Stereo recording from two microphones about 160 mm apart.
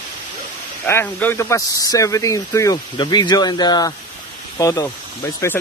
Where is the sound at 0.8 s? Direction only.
15° left (ahead or behind).